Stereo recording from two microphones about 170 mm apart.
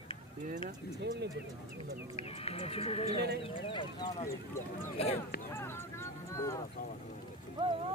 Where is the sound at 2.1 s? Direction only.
35° left (ahead or behind).